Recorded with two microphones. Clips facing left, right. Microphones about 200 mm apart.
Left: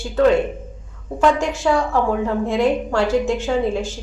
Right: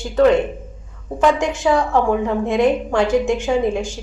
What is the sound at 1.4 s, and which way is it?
A woman's voice, 20° right (ahead or behind).